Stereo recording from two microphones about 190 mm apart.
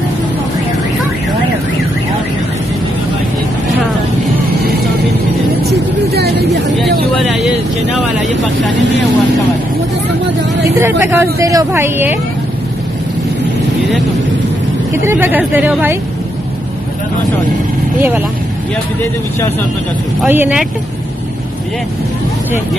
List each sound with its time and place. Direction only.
6.1 s a sound: 60° right (ahead or behind)
7.2 s vehicle: centre (ahead or behind)
10.8 s speech: 15° right (ahead or behind)
15.0 s speech: 10° right (ahead or behind)
20.2 s speech: 10° right (ahead or behind)